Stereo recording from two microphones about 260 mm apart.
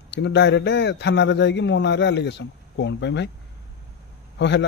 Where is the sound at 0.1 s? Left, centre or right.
Left.